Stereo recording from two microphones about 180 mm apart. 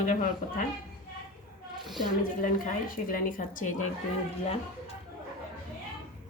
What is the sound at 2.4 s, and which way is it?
Speech, 50° left (ahead or behind).